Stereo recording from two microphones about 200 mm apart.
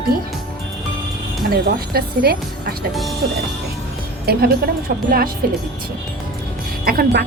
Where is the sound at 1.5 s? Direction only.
50° right (ahead or behind).